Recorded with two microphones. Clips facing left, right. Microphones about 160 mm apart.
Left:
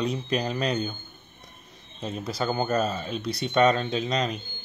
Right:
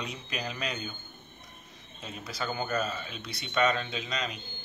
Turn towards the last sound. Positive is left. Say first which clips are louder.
# left 8 dB
turn(degrees=40)  # may be behind; listen again after turning